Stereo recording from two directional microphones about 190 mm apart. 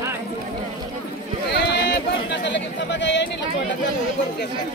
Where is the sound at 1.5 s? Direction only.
65° left (ahead or behind).